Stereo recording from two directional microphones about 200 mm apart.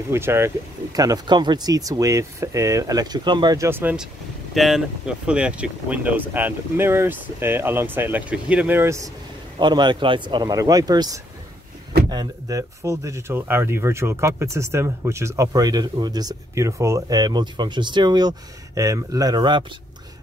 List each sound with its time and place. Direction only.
0.1 s speech: 10° right (ahead or behind)